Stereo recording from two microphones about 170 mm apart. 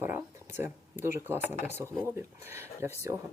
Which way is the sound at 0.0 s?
15° right (ahead or behind).